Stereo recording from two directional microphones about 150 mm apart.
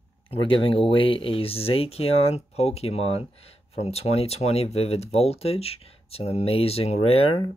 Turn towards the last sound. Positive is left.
turn(degrees=40)  # may be behind; listen again after turning